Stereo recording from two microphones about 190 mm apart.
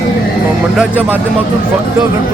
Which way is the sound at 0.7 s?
10° right (ahead or behind).